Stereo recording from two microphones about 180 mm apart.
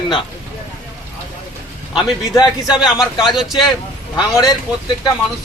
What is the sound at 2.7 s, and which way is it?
Speech, 5° right (ahead or behind).